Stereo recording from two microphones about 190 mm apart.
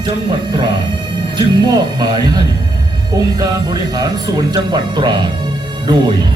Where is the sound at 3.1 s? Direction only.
20° right (ahead or behind).